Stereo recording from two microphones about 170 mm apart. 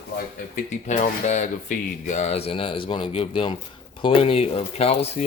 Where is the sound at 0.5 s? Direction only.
45° left (ahead or behind).